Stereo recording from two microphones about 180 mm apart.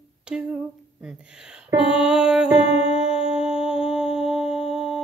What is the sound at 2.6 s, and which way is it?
Music, 30° left (ahead or behind).